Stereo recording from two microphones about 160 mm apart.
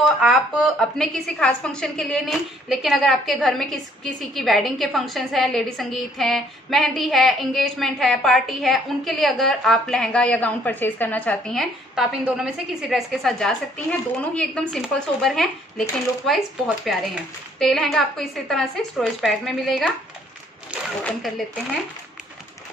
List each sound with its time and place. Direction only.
0.0 s a woman's voice: centre (ahead or behind)